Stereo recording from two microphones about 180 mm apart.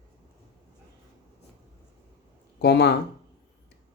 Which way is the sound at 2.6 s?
70° left (ahead or behind).